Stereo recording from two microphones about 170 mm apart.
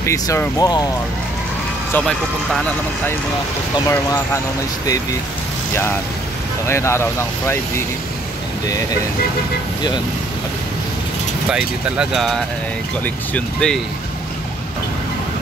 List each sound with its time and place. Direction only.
0.0 s speech: 15° left (ahead or behind)
2.0 s speech: centre (ahead or behind)
3.9 s speech: 15° left (ahead or behind)
6.7 s speech: 15° left (ahead or behind)
11.5 s speech: 5° right (ahead or behind)